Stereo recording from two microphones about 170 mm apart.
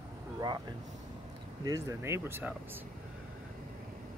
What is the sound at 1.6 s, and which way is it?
Speech, 20° right (ahead or behind).